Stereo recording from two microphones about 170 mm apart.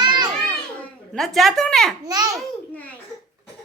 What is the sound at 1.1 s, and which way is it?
Speech, centre (ahead or behind).